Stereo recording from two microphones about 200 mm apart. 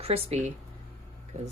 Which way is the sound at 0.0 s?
35° right (ahead or behind).